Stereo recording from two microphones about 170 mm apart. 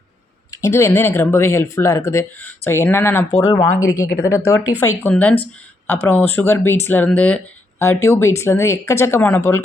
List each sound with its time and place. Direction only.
0.5 s speech: 15° left (ahead or behind)